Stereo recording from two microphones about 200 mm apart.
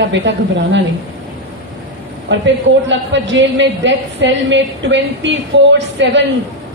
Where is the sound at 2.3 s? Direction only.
65° right (ahead or behind).